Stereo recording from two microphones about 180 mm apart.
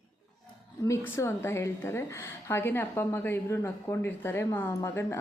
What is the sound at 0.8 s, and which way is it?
A woman's voice, 15° left (ahead or behind).